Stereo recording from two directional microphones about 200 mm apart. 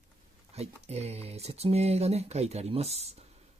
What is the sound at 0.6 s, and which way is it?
Speech, 30° right (ahead or behind).